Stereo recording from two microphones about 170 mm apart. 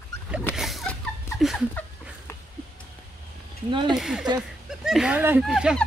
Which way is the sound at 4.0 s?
5° right (ahead or behind).